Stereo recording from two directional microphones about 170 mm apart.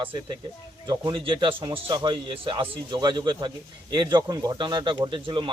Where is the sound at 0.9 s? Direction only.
25° right (ahead or behind).